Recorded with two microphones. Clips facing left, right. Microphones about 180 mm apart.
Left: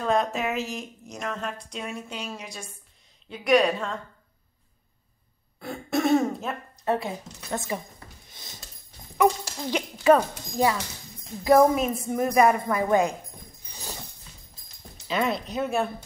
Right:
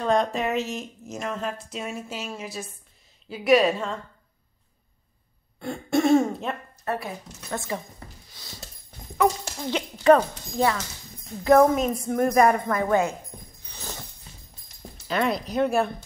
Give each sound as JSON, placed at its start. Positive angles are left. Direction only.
{"t": 0.0, "sound": "speech", "side_deg": 5}
{"t": 5.6, "sound": "throat clearing", "side_deg": 0}
{"t": 6.8, "sound": "a woman's voice", "side_deg": 20}
{"t": 8.3, "sound": "a sound", "side_deg": 20}
{"t": 9.2, "sound": "speech", "side_deg": 15}
{"t": 13.7, "sound": "a sound", "side_deg": 15}
{"t": 15.0, "sound": "speech", "side_deg": 0}